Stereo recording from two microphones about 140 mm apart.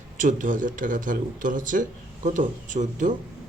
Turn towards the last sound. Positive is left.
turn(degrees=-65)  # may be behind; listen again after turning